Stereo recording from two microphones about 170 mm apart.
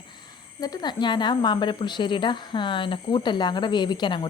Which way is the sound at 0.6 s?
25° left (ahead or behind).